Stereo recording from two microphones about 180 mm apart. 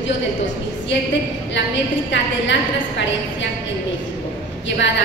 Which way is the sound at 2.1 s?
90° left.